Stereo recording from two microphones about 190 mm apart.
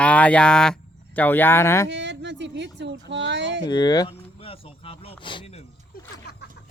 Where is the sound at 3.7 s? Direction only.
20° left (ahead or behind).